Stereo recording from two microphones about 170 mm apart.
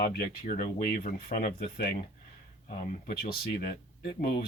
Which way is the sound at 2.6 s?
45° left (ahead or behind).